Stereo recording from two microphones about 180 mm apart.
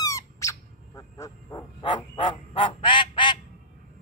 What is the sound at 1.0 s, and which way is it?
Frog, 20° left (ahead or behind).